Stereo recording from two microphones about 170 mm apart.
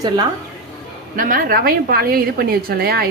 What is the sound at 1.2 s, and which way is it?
A woman's voice, 55° right (ahead or behind).